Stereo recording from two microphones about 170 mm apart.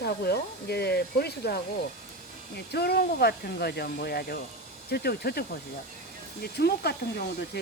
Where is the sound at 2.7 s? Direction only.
70° left (ahead or behind).